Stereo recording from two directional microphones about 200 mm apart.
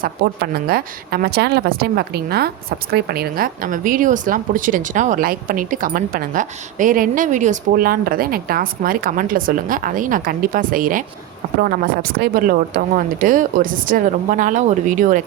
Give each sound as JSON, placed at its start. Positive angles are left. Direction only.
{"t": 0.2, "sound": "a woman's voice", "side_deg": -50}